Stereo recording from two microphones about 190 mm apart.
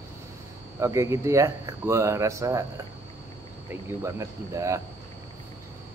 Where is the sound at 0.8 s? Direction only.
15° right (ahead or behind).